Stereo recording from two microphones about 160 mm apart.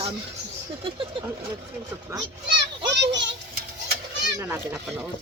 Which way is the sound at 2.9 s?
90° right.